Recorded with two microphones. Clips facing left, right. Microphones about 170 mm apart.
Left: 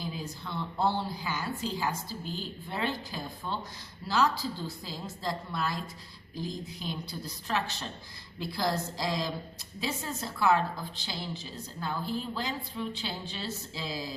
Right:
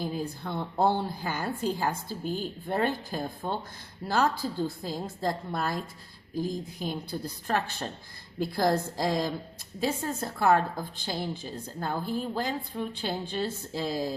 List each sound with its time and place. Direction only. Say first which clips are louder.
0.0 s a woman's voice: right 6 dB; 50° right (ahead or behind)